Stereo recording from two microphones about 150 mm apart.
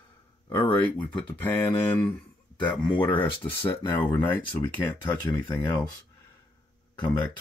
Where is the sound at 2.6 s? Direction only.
30° left (ahead or behind).